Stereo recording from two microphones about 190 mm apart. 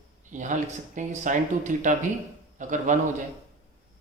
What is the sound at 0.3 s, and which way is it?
Speech, 40° right (ahead or behind).